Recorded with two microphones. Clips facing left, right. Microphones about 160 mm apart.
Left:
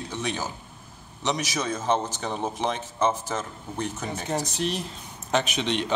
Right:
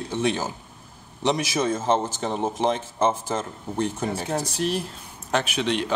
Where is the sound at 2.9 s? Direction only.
30° right (ahead or behind).